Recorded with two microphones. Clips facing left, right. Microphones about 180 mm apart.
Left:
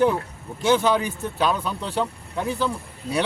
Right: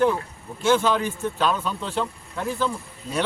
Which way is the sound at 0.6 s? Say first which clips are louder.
Left 1 dB; 15° left (ahead or behind).